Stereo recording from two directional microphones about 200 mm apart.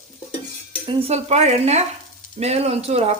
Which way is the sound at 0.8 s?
30° right (ahead or behind).